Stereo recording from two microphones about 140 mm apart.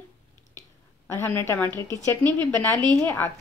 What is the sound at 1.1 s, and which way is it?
A woman's voice, 15° left (ahead or behind).